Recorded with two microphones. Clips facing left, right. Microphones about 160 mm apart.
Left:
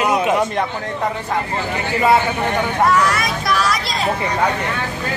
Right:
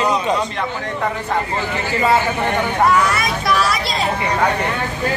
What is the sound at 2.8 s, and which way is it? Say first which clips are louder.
Vehicle: even; centre (ahead or behind).